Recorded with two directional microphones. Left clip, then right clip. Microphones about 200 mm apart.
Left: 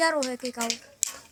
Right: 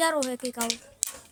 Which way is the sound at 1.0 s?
55° right (ahead or behind).